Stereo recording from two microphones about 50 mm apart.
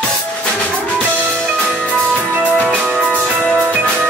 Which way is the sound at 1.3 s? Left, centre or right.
Centre.